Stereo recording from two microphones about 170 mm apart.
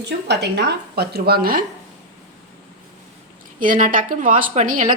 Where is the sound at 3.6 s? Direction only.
55° right (ahead or behind).